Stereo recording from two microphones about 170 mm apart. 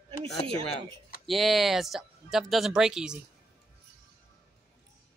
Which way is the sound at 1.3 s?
Centre (ahead or behind).